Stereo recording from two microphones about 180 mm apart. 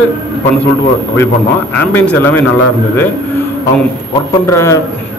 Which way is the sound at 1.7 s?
10° left (ahead or behind).